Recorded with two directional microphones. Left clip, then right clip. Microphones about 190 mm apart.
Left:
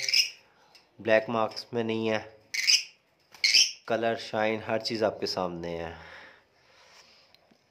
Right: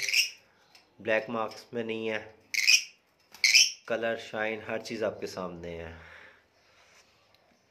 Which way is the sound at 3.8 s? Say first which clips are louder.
Left 3 dB; 25° left (ahead or behind).